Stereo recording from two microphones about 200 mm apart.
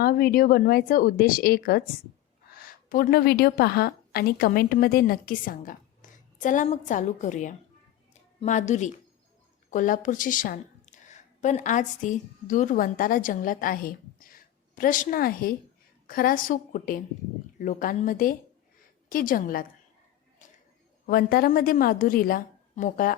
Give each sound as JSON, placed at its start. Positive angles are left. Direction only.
{"t": 0.0, "sound": "a woman's voice", "side_deg": 50}
{"t": 2.9, "sound": "a woman's voice", "side_deg": 45}
{"t": 21.1, "sound": "a woman's voice", "side_deg": 45}